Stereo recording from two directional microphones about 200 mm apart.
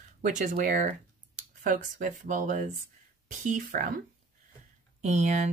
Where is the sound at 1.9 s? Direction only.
40° right (ahead or behind).